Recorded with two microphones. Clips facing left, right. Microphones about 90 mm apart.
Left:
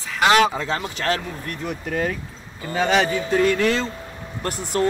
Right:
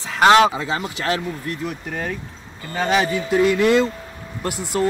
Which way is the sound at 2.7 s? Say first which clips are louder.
Even; centre (ahead or behind).